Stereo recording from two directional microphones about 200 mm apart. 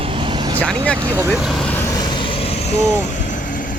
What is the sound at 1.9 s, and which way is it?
Vehicle, 30° left (ahead or behind).